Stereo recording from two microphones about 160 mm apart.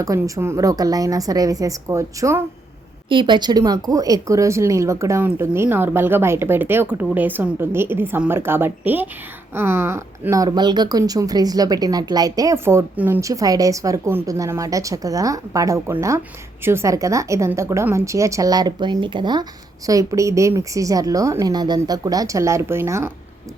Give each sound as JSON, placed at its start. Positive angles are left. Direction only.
{"t": 0.0, "sound": "speech", "side_deg": -20}
{"t": 3.1, "sound": "speech", "side_deg": -30}